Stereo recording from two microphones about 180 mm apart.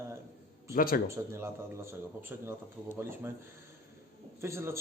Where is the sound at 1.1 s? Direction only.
15° right (ahead or behind).